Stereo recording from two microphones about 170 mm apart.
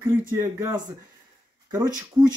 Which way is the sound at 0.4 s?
15° right (ahead or behind).